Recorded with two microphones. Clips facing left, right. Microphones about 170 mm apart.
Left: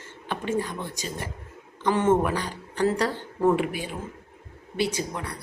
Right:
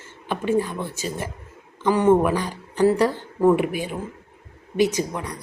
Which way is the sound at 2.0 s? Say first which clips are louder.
Right 5 dB; 15° right (ahead or behind).